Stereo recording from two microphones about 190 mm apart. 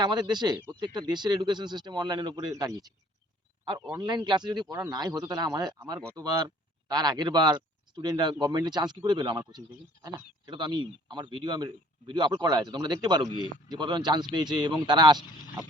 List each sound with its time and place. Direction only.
0.0 s a man's voice: 20° right (ahead or behind)
10.4 s a man's voice: 25° right (ahead or behind)